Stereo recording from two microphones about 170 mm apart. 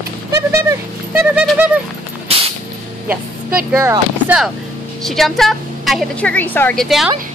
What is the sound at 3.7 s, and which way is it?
Speech, 10° right (ahead or behind).